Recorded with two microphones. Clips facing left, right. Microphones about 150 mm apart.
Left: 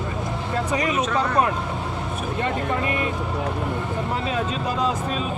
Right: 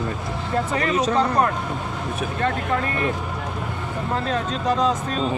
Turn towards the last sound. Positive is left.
turn(degrees=5)  # may be behind; listen again after turning